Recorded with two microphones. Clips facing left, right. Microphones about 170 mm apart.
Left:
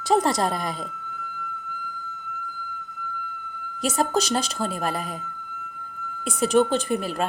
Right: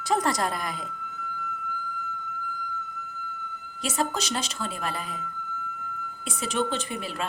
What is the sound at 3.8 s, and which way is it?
A woman's voice, 40° left (ahead or behind).